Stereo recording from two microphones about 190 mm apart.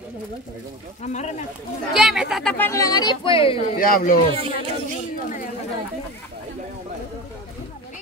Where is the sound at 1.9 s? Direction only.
5° right (ahead or behind); by 3.6 s 30° left (ahead or behind).